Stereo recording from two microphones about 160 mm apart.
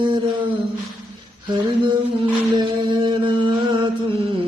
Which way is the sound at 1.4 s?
30° right (ahead or behind).